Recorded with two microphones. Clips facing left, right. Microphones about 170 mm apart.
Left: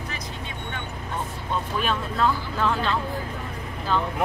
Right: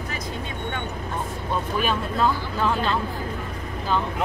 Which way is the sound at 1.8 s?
5° right (ahead or behind).